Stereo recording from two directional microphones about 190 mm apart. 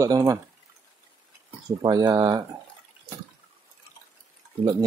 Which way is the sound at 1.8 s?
25° right (ahead or behind).